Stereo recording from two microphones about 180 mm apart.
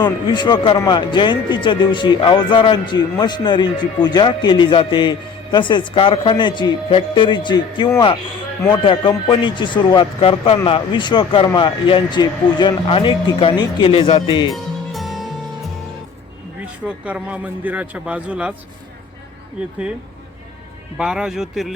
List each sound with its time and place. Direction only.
0.0 s speech: 25° left (ahead or behind)
14.5 s music: centre (ahead or behind)
16.8 s a man's voice: 5° right (ahead or behind)
21.0 s speech: 5° right (ahead or behind)